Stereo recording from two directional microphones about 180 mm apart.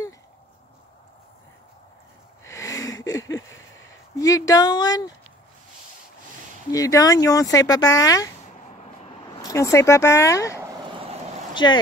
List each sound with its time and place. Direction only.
2.4 s a sound: 15° left (ahead or behind)
4.2 s speech: 20° left (ahead or behind)
6.7 s speech: 20° left (ahead or behind)
9.4 s speech: 15° left (ahead or behind)